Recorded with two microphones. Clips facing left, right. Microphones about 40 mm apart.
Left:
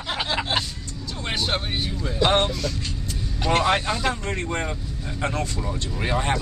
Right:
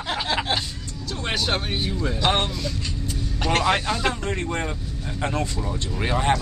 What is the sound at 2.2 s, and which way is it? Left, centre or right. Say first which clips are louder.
Speech: left 2 dB; centre.